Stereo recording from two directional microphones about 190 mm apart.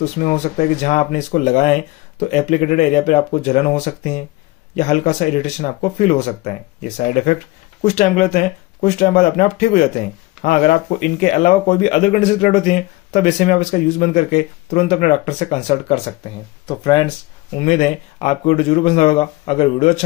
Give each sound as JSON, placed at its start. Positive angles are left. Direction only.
{"t": 0.0, "sound": "speech", "side_deg": 40}
{"t": 16.6, "sound": "speech", "side_deg": 20}
{"t": 17.6, "sound": "speech", "side_deg": 35}